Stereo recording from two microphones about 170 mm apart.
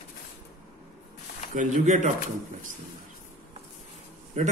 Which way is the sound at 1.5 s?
45° right (ahead or behind).